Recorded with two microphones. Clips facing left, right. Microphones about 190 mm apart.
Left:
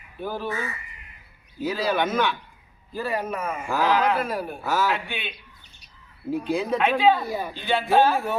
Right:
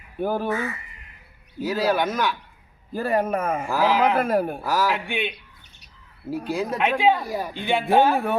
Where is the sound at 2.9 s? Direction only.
55° right (ahead or behind).